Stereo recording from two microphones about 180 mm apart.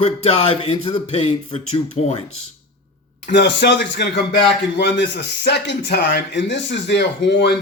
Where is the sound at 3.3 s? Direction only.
70° left (ahead or behind).